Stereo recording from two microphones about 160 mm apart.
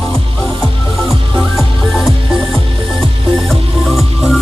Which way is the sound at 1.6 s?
Centre (ahead or behind).